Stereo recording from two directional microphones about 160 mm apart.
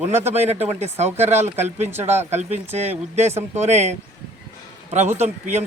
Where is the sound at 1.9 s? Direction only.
15° right (ahead or behind).